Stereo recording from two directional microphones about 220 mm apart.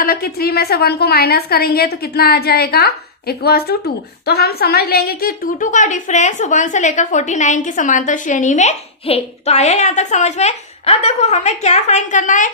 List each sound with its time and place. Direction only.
0.0 s a woman's voice: 40° left (ahead or behind)